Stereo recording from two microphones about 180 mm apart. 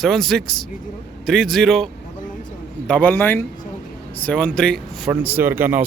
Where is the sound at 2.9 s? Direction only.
10° left (ahead or behind).